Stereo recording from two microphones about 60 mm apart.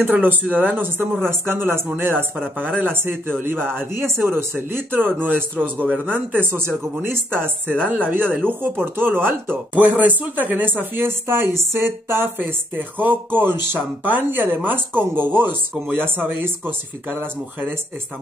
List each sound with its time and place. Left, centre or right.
0.0 s speech: right
9.8 s speech: right
12.4 s speech: right